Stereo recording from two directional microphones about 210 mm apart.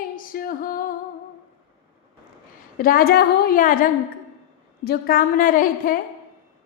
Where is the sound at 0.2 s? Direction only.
40° left (ahead or behind).